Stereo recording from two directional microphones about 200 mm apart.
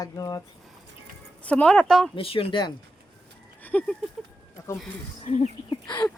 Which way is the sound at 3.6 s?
5° left (ahead or behind).